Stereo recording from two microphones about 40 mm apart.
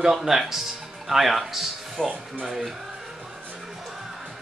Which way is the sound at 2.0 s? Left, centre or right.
Right.